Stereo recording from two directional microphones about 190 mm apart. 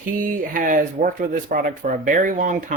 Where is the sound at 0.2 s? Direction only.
45° right (ahead or behind).